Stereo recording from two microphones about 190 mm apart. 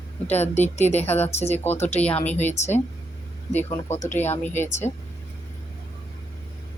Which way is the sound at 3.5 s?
10° left (ahead or behind).